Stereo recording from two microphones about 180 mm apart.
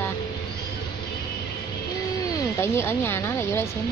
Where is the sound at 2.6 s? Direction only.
15° left (ahead or behind).